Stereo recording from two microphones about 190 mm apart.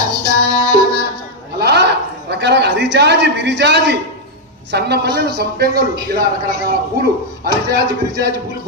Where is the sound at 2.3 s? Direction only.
65° right (ahead or behind).